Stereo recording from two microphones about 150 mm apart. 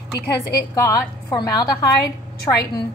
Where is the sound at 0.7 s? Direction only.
25° left (ahead or behind).